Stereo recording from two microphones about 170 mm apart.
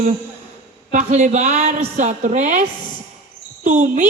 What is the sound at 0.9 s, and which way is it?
A woman's voice, 45° right (ahead or behind).